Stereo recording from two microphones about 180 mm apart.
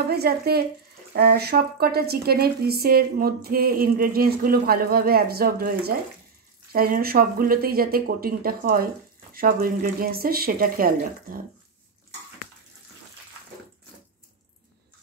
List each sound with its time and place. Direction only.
0.1 s speech: 60° right (ahead or behind)